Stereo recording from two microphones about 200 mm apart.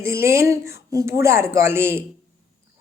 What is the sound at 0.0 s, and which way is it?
Speech, 10° right (ahead or behind).